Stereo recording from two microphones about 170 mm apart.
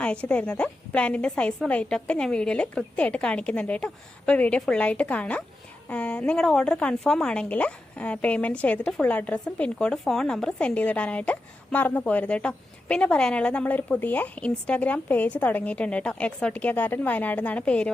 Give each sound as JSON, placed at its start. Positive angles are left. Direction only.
{"t": 0.0, "sound": "speech", "side_deg": 5}